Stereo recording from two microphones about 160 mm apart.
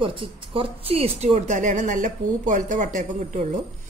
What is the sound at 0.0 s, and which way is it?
Speech, 35° right (ahead or behind).